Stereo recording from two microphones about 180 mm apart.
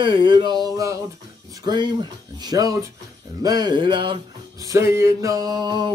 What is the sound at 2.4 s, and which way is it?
Music, 20° right (ahead or behind).